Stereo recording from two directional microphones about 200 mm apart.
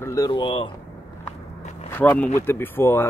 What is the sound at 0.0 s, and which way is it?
Speech, 15° left (ahead or behind).